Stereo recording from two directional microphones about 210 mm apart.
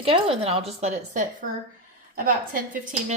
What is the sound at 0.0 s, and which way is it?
A woman's voice, 30° right (ahead or behind).